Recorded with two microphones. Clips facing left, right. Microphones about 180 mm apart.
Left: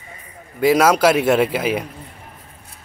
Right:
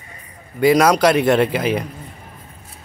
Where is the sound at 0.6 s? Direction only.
5° left (ahead or behind).